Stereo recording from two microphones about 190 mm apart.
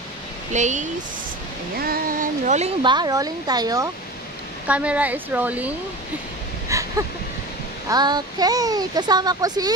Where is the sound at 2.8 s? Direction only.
25° right (ahead or behind).